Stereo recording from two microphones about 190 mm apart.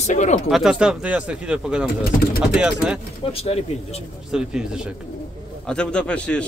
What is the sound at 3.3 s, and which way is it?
Speech, 30° left (ahead or behind).